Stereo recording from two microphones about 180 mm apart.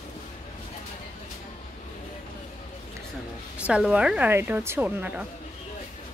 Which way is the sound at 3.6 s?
5° right (ahead or behind).